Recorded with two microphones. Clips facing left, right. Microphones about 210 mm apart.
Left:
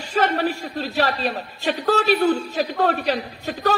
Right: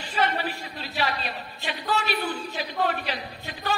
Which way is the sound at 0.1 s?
45° left (ahead or behind).